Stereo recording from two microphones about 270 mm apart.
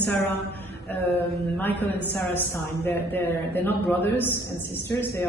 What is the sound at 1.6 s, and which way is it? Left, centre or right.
A man's voice, centre.